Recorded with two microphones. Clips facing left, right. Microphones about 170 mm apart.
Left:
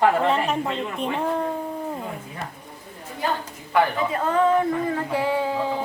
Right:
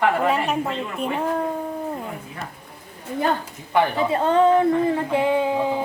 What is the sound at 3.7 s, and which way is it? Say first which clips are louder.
A woman's voice: right 2 dB; 30° right (ahead or behind).